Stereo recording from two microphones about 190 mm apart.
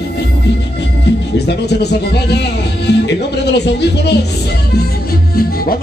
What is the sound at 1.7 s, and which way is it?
Speech, 60° left (ahead or behind).